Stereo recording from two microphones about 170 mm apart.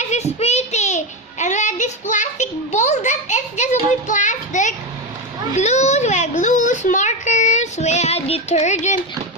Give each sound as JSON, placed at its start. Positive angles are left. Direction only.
{"t": 0.1, "sound": "child singing", "side_deg": 40}
{"t": 5.5, "sound": "a child's voice", "side_deg": 45}